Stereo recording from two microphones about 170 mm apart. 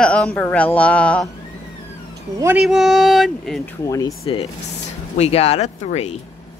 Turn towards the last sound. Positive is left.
turn(degrees=40)  # may be behind; listen again after turning